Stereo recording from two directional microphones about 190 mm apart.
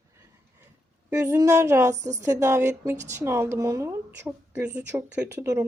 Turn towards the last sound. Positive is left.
turn(degrees=-15)  # may be behind; listen again after turning